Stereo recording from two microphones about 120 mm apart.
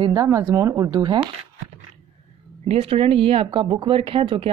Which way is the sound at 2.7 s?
50° right (ahead or behind).